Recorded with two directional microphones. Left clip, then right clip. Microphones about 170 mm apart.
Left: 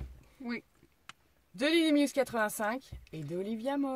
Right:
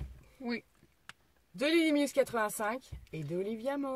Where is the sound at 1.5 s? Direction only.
25° left (ahead or behind).